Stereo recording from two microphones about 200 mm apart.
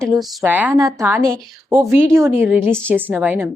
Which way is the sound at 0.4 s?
10° right (ahead or behind).